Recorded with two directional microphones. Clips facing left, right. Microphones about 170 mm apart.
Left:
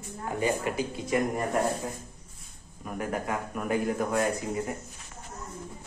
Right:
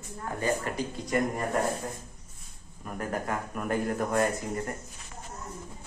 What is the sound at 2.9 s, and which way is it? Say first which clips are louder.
Speech: left 1 dB; 5° left (ahead or behind).